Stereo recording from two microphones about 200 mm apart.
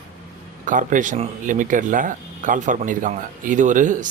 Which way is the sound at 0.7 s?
40° right (ahead or behind).